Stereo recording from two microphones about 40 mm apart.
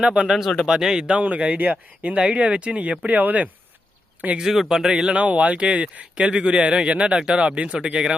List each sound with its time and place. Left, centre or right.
0.0 s speech: right
0.3 s speech: centre
1.1 s speech: right
3.1 s speech: right
4.7 s speech: centre
5.2 s speech: right
7.4 s speech: right